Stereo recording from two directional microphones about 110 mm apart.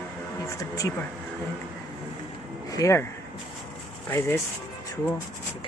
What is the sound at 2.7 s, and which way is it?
Speech, 30° left (ahead or behind).